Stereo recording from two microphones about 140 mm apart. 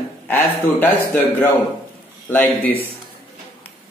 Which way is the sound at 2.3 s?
15° left (ahead or behind).